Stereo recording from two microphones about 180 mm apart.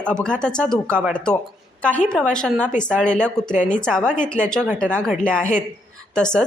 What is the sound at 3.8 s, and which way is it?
Speech, 5° left (ahead or behind).